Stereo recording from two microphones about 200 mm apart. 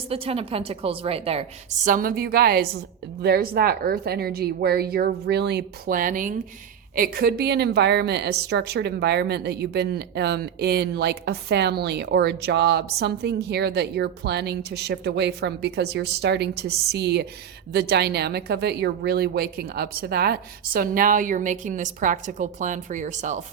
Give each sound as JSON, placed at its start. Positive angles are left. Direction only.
{"t": 0.1, "sound": "a woman's voice", "side_deg": -30}